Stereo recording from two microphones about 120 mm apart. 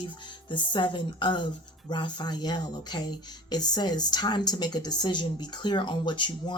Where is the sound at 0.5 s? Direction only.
40° left (ahead or behind).